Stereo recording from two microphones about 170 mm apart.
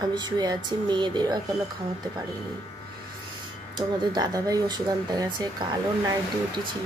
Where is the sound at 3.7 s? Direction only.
25° right (ahead or behind).